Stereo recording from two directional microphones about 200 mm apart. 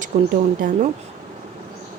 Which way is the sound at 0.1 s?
40° right (ahead or behind).